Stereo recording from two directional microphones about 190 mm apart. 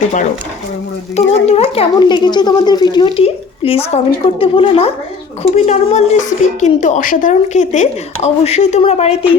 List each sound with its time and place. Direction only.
1.1 s a woman's voice: 35° left (ahead or behind)